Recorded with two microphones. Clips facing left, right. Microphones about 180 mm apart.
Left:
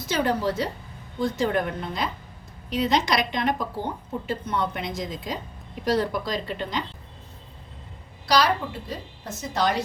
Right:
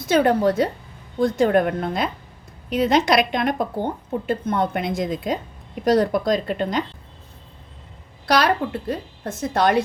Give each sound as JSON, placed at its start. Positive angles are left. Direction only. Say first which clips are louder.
{"t": 0.1, "sound": "a woman's voice", "louder": "right 7 dB", "side_deg": -55}
{"t": 8.3, "sound": "a woman's voice", "louder": "right 3 dB", "side_deg": -55}